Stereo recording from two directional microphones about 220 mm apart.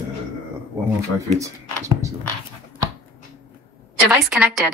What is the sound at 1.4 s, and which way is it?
Speech, 15° right (ahead or behind).